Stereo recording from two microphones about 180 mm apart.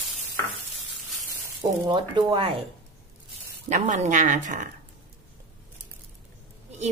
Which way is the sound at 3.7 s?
40° right (ahead or behind).